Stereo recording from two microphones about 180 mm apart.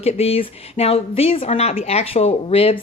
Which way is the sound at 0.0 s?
35° left (ahead or behind).